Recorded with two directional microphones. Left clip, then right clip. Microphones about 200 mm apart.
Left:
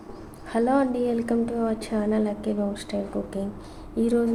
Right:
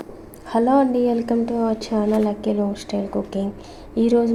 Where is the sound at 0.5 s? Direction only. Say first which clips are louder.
Right 5 dB; 20° right (ahead or behind).